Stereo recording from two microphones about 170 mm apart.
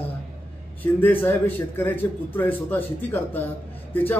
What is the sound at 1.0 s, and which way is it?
A man's voice, 10° left (ahead or behind).